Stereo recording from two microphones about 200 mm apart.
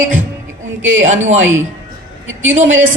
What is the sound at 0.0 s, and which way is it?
A man's voice, 75° right (ahead or behind).